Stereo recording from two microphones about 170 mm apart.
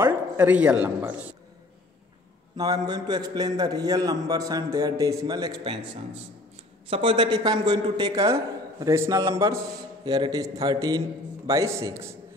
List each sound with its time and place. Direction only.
0.0 s speech: 10° right (ahead or behind)
2.5 s a man's voice: 25° right (ahead or behind)